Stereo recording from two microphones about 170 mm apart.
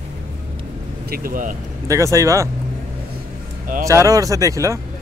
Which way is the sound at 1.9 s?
20° right (ahead or behind).